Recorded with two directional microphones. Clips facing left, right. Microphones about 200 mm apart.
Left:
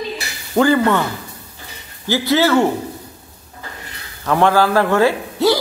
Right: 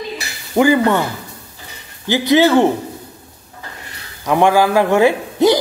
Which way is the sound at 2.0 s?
20° right (ahead or behind).